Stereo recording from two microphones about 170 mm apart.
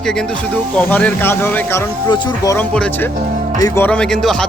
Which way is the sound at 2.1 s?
25° left (ahead or behind).